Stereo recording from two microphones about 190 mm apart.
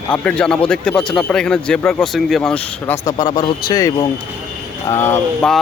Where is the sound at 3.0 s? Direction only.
20° left (ahead or behind).